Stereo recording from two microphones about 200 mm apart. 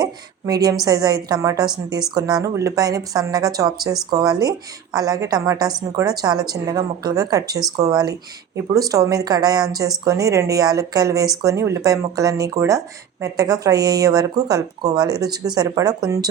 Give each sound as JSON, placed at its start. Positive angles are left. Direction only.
{"t": 0.0, "sound": "speech", "side_deg": -20}